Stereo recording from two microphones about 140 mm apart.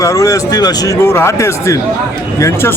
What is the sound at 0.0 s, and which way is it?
A man's voice, 25° left (ahead or behind).